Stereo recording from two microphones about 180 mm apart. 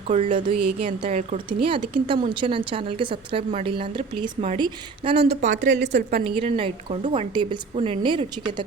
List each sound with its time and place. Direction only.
0.2 s a woman's voice: 30° right (ahead or behind)
5.3 s speech: 40° right (ahead or behind)
6.0 s a woman's voice: 60° right (ahead or behind)
6.2 s a woman's voice: 30° right (ahead or behind)